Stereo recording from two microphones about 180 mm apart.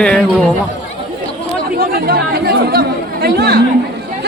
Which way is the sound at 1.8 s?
55° right (ahead or behind).